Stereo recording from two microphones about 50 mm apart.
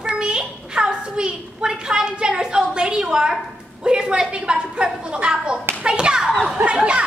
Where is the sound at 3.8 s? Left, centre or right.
Centre.